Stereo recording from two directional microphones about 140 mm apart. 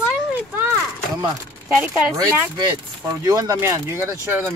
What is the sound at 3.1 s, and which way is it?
Speech, 25° right (ahead or behind).